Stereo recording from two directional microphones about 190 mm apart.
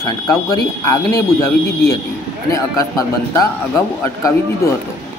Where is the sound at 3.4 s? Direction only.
15° left (ahead or behind).